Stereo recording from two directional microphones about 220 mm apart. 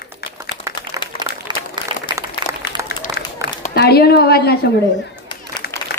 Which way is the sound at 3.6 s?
45° left (ahead or behind).